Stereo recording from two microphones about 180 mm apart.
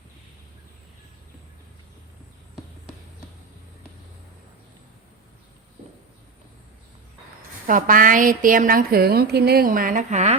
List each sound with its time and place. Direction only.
7.7 s a woman's voice: 50° right (ahead or behind)